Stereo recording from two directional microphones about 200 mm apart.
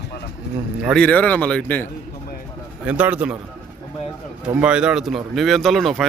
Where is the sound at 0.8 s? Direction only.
5° left (ahead or behind).